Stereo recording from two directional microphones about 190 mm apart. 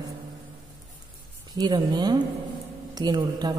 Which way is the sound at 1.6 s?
25° right (ahead or behind).